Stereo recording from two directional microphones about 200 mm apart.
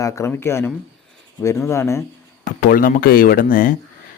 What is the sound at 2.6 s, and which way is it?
Speech, 45° left (ahead or behind).